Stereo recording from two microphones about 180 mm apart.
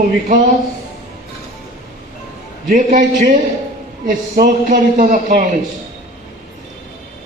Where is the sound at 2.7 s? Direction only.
45° right (ahead or behind).